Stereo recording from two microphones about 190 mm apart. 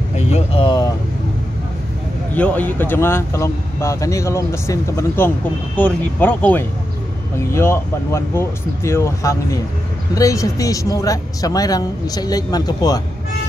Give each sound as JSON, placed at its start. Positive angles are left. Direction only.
{"t": 0.1, "sound": "vehicle", "side_deg": 35}
{"t": 2.3, "sound": "speech", "side_deg": 10}